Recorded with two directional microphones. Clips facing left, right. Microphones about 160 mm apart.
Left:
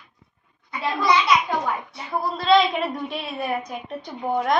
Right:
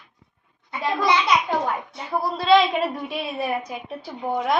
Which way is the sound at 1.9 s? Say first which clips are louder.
Right 1 dB; 15° right (ahead or behind).